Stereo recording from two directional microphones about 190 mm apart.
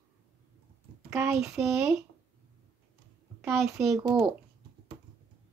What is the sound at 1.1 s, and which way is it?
Speech, 15° right (ahead or behind).